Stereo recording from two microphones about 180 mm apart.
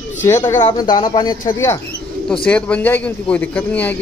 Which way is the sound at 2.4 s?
5° left (ahead or behind).